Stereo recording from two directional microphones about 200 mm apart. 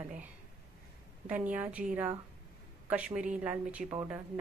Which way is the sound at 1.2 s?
5° right (ahead or behind).